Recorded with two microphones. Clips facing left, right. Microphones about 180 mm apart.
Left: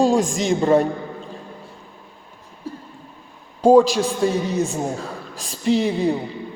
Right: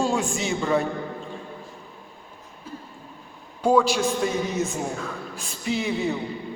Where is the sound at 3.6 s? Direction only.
35° left (ahead or behind).